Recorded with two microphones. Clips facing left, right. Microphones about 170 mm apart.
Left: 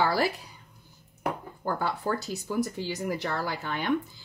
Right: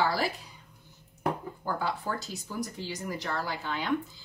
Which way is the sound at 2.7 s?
60° left (ahead or behind).